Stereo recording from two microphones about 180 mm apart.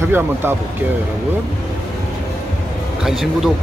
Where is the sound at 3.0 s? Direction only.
Centre (ahead or behind).